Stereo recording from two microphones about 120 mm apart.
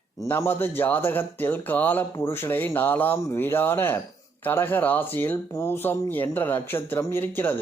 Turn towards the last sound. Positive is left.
turn(degrees=15)  # may be behind; listen again after turning